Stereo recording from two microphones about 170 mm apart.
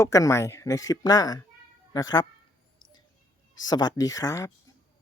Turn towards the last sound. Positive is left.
turn(degrees=20)  # may be behind; listen again after turning